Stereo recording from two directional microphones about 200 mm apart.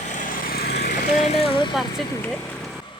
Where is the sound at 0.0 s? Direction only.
40° left (ahead or behind).